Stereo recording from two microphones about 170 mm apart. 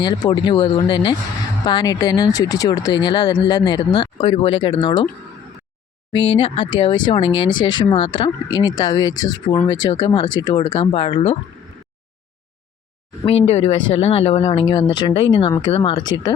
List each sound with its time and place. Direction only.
0.0 s speech: 25° left (ahead or behind)
6.3 s speech: 30° left (ahead or behind)
13.2 s speech: 35° left (ahead or behind)